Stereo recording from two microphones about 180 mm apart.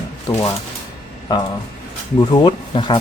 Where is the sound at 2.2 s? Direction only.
25° left (ahead or behind).